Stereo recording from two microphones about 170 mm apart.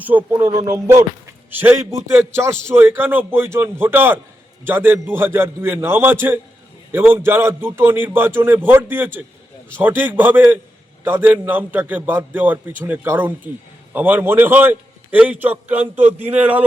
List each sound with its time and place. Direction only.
0.1 s a man's voice: 10° right (ahead or behind)